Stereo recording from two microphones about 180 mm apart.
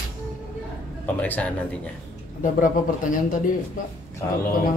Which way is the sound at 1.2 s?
10° left (ahead or behind).